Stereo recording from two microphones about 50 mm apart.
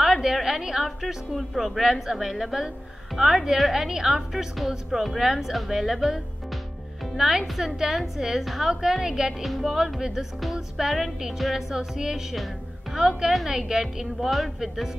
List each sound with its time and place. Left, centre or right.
0.0 s a woman's voice: centre